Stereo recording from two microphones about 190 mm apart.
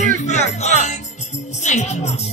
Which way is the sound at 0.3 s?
35° left (ahead or behind).